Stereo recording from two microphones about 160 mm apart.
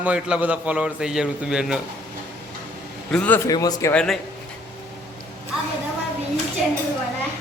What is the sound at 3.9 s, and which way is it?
Speech, 5° left (ahead or behind).